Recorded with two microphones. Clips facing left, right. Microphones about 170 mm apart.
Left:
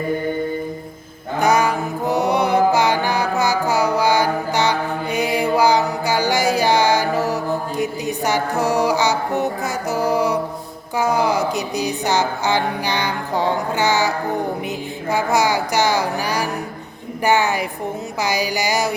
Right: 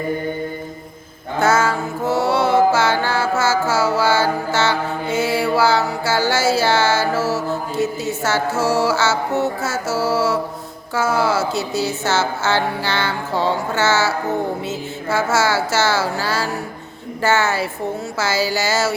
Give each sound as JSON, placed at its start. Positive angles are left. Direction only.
{"t": 1.4, "sound": "music", "side_deg": 15}
{"t": 10.9, "sound": "a woman's voice", "side_deg": 15}